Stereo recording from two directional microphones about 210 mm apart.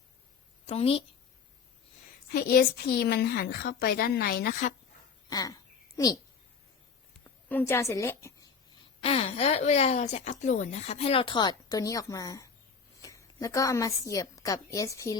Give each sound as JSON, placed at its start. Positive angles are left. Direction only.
{"t": 0.7, "sound": "speech", "side_deg": 30}
{"t": 2.3, "sound": "a woman's voice", "side_deg": 45}
{"t": 5.3, "sound": "speech", "side_deg": 20}
{"t": 7.3, "sound": "a woman's voice", "side_deg": 10}
{"t": 9.0, "sound": "a woman's voice", "side_deg": 25}